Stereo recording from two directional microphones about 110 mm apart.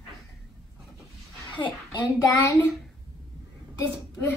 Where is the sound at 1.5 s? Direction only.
45° left (ahead or behind).